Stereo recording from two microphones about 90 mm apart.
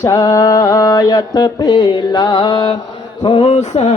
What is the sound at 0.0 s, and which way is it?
Mantra, 40° left (ahead or behind).